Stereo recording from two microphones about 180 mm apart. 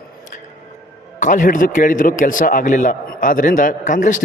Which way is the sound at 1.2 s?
45° left (ahead or behind).